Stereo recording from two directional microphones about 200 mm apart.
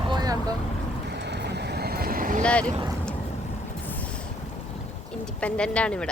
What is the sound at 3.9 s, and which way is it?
Boat, 5° left (ahead or behind).